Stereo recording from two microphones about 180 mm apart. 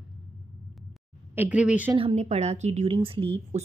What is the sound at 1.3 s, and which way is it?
Speech, 10° right (ahead or behind).